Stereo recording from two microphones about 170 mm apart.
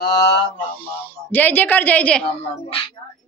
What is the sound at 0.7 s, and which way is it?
A woman's voice, 10° left (ahead or behind).